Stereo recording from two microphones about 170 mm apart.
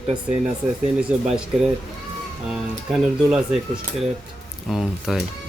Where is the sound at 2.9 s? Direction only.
Centre (ahead or behind).